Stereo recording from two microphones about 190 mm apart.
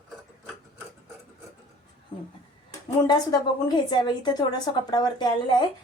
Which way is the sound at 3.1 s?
20° left (ahead or behind).